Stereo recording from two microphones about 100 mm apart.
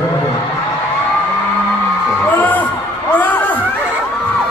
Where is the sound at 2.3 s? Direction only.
15° left (ahead or behind).